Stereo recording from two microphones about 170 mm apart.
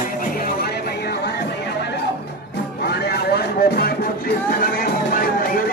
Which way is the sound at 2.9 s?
70° left (ahead or behind).